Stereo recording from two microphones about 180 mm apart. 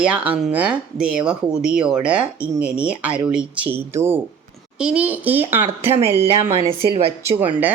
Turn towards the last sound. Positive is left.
turn(degrees=-10)  # may be behind; listen again after turning